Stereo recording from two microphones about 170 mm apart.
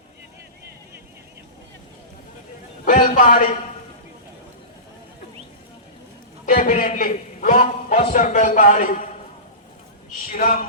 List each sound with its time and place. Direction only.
2.8 s a man's voice: 50° left (ahead or behind)
6.4 s a sound: 55° left (ahead or behind)
10.3 s a man's voice: 50° left (ahead or behind)